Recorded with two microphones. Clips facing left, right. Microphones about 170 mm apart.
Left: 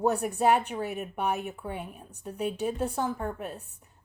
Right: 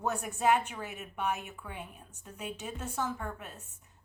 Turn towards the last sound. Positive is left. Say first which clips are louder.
# left 10 dB
turn(degrees=65)  # may be behind; listen again after turning